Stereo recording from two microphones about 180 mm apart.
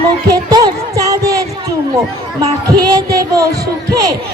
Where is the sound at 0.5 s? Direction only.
20° right (ahead or behind).